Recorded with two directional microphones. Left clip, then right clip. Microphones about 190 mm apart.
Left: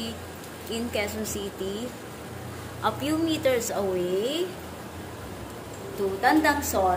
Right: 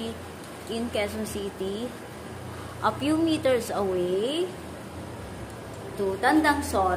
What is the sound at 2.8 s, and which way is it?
A woman's voice, 25° right (ahead or behind).